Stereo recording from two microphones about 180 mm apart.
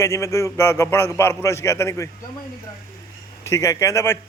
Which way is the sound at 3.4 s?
15° left (ahead or behind).